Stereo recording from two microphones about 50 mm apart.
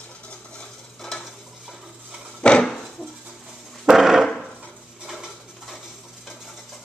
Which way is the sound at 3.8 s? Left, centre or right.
Centre.